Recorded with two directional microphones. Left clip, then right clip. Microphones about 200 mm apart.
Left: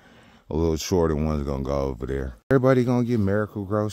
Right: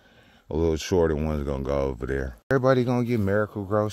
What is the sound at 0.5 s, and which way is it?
Speech, 30° left (ahead or behind).